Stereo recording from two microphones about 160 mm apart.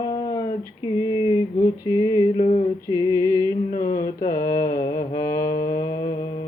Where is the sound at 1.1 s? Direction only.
30° left (ahead or behind).